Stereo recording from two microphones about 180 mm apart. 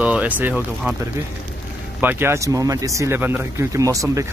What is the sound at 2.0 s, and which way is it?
Speech, 10° right (ahead or behind).